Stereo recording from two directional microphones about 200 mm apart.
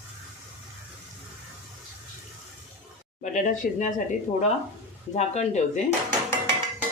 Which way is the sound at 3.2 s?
40° left (ahead or behind).